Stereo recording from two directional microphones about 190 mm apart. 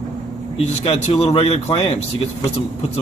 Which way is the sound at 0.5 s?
30° left (ahead or behind).